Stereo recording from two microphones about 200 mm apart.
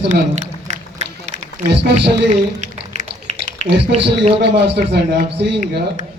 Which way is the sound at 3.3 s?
35° right (ahead or behind).